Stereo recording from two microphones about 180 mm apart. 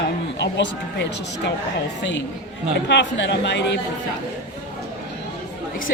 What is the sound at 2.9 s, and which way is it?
Speech, 75° left (ahead or behind).